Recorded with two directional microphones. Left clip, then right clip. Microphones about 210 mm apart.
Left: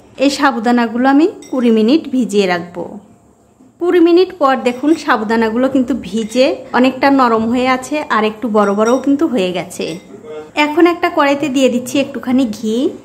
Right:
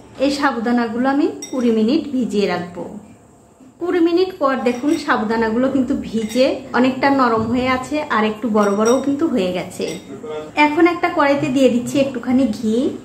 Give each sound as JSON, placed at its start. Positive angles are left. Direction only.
{"t": 0.2, "sound": "a woman's voice", "side_deg": 40}
{"t": 3.8, "sound": "a woman's voice", "side_deg": 35}